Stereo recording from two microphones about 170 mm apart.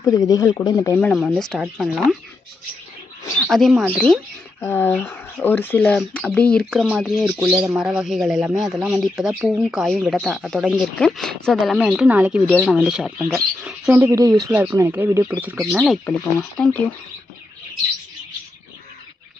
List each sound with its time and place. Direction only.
0.0 s speech: 20° left (ahead or behind)
1.0 s speech: centre (ahead or behind)
3.3 s speech: centre (ahead or behind)